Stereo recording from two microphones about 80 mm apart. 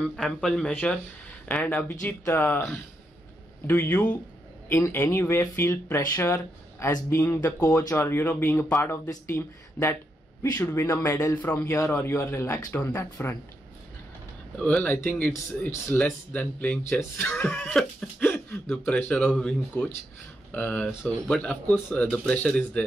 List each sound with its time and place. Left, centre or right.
0.0 s speech: centre
1.5 s a man's voice: centre; by 4.9 s left
4.9 s speech: left
14.6 s speech: centre
17.5 s speech: centre
18.2 s speech: left